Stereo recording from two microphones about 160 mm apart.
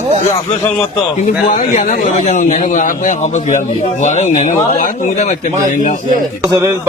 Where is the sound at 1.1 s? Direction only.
50° left (ahead or behind).